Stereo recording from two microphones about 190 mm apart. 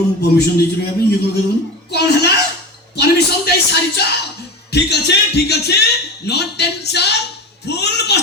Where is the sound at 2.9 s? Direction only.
55° left (ahead or behind).